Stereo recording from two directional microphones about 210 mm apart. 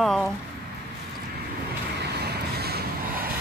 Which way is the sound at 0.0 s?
Centre (ahead or behind).